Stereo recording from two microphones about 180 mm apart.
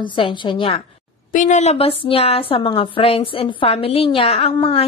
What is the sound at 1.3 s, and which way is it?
A woman's voice, 45° left (ahead or behind).